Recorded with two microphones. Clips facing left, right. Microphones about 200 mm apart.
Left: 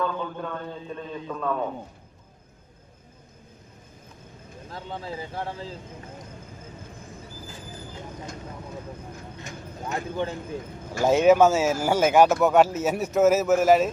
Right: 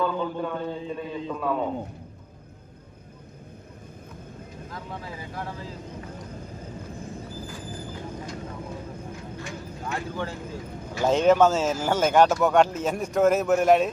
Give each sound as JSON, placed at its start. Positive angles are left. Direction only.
{"t": 0.0, "sound": "a man's voice", "side_deg": -5}
{"t": 4.7, "sound": "speech", "side_deg": 30}
{"t": 9.4, "sound": "a sound", "side_deg": 20}
{"t": 11.0, "sound": "speech", "side_deg": 10}